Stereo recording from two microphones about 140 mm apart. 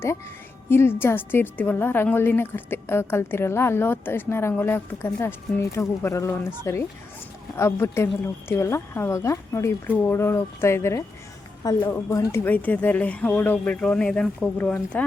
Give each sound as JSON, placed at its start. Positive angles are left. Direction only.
{"t": 0.7, "sound": "a woman's voice", "side_deg": 15}